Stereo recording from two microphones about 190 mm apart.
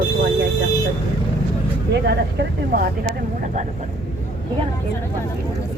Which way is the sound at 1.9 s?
60° right (ahead or behind).